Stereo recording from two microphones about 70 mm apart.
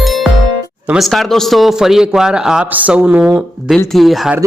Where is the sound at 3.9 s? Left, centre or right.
Centre.